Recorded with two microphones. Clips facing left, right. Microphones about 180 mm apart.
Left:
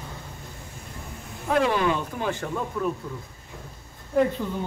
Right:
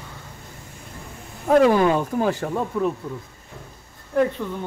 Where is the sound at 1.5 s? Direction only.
45° right (ahead or behind).